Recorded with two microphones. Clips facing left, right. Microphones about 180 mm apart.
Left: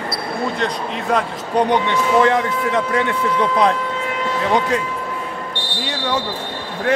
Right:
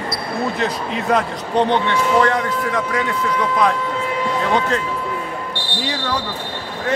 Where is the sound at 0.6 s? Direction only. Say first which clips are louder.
Right 1 dB; centre (ahead or behind).